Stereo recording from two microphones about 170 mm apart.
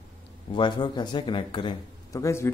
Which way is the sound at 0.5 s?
30° left (ahead or behind).